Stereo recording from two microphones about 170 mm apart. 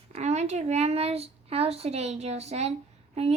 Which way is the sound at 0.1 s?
40° right (ahead or behind).